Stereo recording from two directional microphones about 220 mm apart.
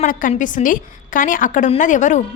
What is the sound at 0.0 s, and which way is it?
A woman's voice, 35° left (ahead or behind).